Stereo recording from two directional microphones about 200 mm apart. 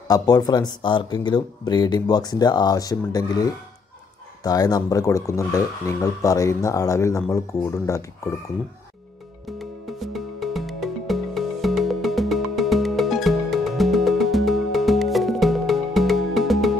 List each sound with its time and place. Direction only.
0.1 s speech: 20° left (ahead or behind)
9.6 s music: centre (ahead or behind)